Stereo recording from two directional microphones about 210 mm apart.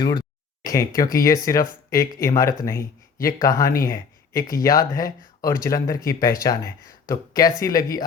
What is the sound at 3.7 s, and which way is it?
Speech, 40° left (ahead or behind).